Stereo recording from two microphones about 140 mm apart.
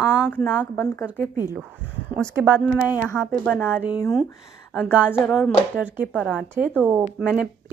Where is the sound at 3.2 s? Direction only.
5° left (ahead or behind).